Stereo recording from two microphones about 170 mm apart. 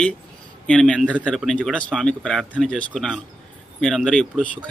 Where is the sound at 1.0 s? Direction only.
10° right (ahead or behind).